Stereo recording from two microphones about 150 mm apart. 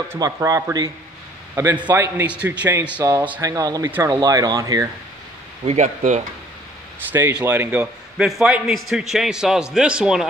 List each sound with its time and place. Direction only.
0.1 s a man's voice: 20° right (ahead or behind)
5.7 s speech: 50° right (ahead or behind)
7.1 s a man's voice: 10° right (ahead or behind)